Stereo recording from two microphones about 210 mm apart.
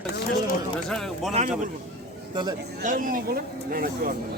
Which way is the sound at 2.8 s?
40° right (ahead or behind).